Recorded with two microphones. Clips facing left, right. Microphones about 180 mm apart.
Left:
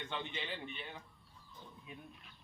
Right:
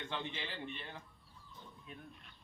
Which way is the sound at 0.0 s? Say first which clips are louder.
Even; centre (ahead or behind).